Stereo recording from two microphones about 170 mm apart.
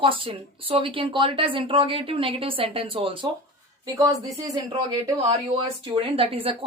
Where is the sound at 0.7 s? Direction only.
30° right (ahead or behind).